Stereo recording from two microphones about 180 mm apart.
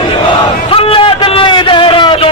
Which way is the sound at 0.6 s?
30° left (ahead or behind).